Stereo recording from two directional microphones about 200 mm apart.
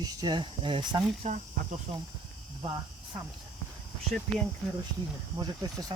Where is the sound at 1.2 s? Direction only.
40° right (ahead or behind).